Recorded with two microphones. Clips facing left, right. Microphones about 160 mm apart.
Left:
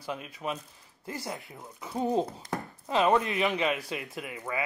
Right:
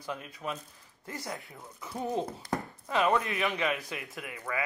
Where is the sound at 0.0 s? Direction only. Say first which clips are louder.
Left 2 dB; 15° left (ahead or behind).